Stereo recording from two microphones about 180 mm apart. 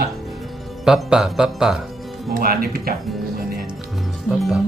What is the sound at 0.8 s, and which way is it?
Speech, 5° right (ahead or behind).